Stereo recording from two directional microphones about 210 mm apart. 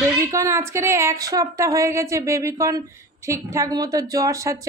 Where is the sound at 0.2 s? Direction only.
15° right (ahead or behind).